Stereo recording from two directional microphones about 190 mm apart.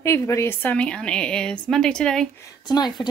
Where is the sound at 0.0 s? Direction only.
15° left (ahead or behind).